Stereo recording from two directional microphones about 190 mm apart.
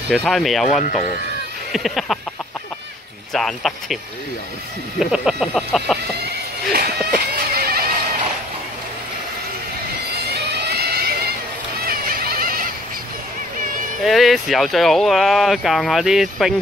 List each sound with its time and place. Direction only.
0.1 s speech: centre (ahead or behind)
0.8 s speech: 45° left (ahead or behind)
1.7 s speech: centre (ahead or behind)
3.3 s speech: centre (ahead or behind)
6.2 s a sound: 55° right (ahead or behind)
10.1 s a sound: 55° right (ahead or behind)
14.0 s speech: centre (ahead or behind)